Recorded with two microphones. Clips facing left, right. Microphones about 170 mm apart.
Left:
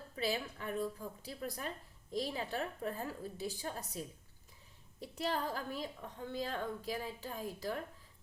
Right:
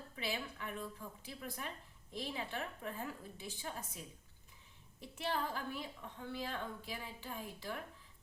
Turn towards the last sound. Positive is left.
turn(degrees=40)  # may be behind; listen again after turning